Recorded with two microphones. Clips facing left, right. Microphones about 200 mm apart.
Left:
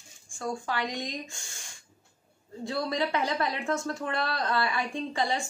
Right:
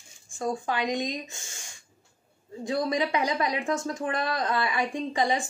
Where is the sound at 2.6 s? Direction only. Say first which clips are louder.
Right 3 dB; 15° right (ahead or behind).